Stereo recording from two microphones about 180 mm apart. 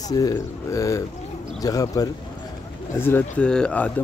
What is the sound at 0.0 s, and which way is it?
Speech, 20° left (ahead or behind).